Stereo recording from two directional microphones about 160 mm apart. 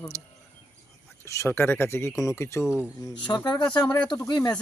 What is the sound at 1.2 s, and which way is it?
Speech, 20° left (ahead or behind).